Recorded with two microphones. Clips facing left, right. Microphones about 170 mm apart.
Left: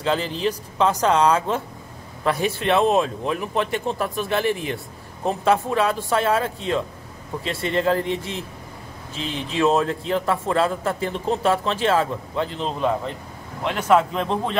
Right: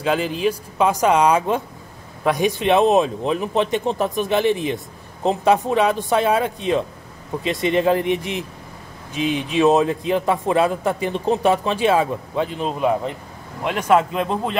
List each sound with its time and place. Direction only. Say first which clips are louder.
0.0 s speech: right 3 dB; 10° right (ahead or behind)